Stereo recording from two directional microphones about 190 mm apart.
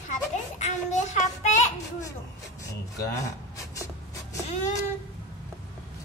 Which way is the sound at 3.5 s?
15° left (ahead or behind).